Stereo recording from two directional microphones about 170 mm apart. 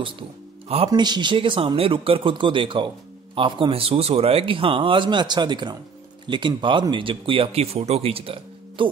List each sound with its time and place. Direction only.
0.8 s speech: 25° right (ahead or behind)